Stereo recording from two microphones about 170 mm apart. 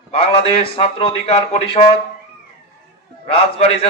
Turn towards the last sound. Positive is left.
turn(degrees=35)  # may be behind; listen again after turning